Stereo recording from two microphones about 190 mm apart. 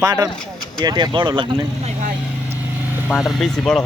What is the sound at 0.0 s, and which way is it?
Speech, 20° right (ahead or behind).